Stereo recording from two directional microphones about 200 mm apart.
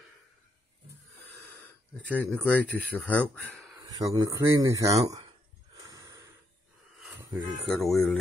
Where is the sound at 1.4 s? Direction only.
10° left (ahead or behind).